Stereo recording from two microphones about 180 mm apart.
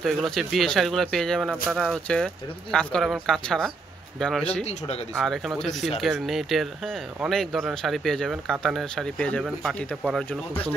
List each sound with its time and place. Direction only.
0.0 s speech: centre (ahead or behind)
4.6 s speech: 35° left (ahead or behind)
5.1 s speech: centre (ahead or behind)